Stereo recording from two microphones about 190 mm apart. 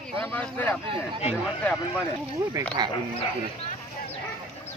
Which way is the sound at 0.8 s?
30° right (ahead or behind).